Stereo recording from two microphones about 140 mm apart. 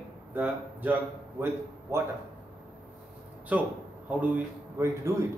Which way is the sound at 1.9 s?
20° right (ahead or behind).